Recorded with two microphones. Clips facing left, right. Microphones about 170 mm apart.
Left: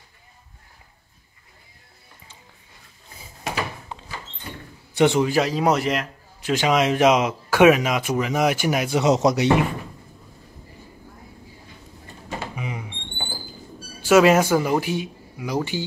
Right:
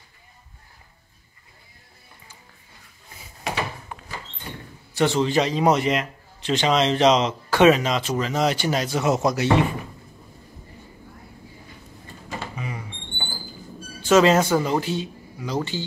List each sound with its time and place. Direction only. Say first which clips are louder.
4.9 s a man's voice: left 3 dB; 15° left (ahead or behind)
5.3 s a man's voice: even; 5° left (ahead or behind)
12.5 s a sound: left 1 dB; 15° left (ahead or behind)
14.0 s a man's voice: left 1 dB; 10° left (ahead or behind)